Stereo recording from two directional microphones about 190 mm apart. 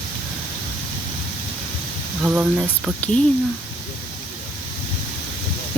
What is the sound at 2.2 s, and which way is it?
Speech, 10° right (ahead or behind).